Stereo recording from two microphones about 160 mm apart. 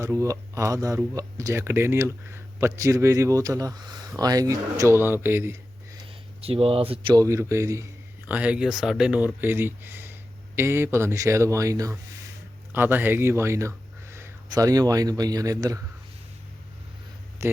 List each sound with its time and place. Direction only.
0.0 s speech: 20° right (ahead or behind)
6.4 s speech: 35° right (ahead or behind)
7.1 s speech: 20° right (ahead or behind)
8.3 s speech: 10° right (ahead or behind)
17.4 s a sound: 15° right (ahead or behind)